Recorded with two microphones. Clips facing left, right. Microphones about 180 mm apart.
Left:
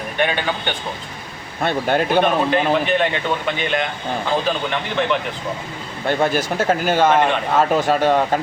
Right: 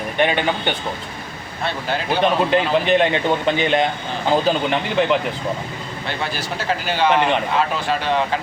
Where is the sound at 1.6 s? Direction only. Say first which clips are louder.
Left 5 dB; 55° left (ahead or behind).